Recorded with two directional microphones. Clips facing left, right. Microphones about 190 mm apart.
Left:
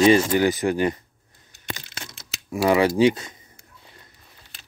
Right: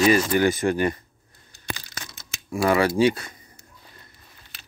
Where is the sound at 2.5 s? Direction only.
15° left (ahead or behind).